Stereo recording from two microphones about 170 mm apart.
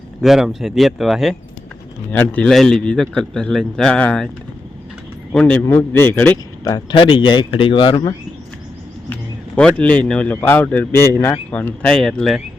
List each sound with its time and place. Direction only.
0.2 s a man's voice: centre (ahead or behind)
2.1 s a man's voice: 10° left (ahead or behind)
5.3 s a man's voice: 5° left (ahead or behind)
6.7 s speech: 30° left (ahead or behind)
9.6 s a man's voice: 5° left (ahead or behind)